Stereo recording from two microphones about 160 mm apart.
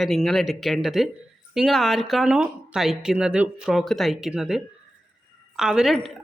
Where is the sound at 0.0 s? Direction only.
Centre (ahead or behind).